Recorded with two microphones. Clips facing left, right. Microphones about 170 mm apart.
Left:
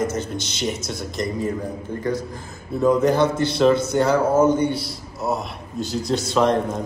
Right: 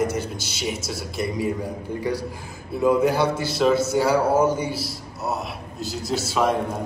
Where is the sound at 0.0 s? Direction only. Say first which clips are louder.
Even; 10° right (ahead or behind).